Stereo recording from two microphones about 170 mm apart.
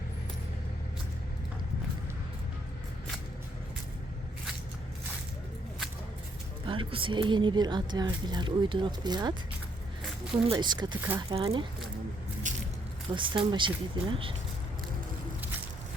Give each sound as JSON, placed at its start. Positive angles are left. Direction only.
{"t": 6.7, "sound": "a woman's voice", "side_deg": -30}
{"t": 10.4, "sound": "a woman's voice", "side_deg": -30}
{"t": 12.4, "sound": "squish", "side_deg": -45}
{"t": 13.1, "sound": "a woman's voice", "side_deg": -30}